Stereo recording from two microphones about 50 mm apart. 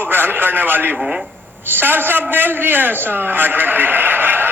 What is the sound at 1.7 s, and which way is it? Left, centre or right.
A man's voice, right.